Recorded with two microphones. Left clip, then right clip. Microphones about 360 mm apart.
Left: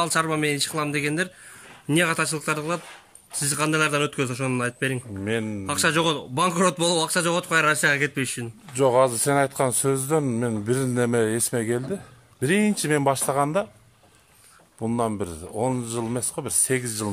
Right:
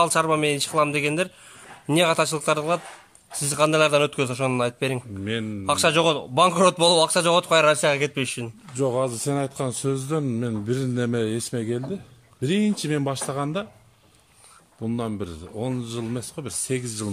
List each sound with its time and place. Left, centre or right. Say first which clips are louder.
0.0 s a man's voice: right 3 dB; centre
5.2 s speech: left 4 dB; centre
5.7 s a man's voice: right 3 dB; centre
8.7 s speech: left 5 dB; left
15.0 s speech: left 6 dB; centre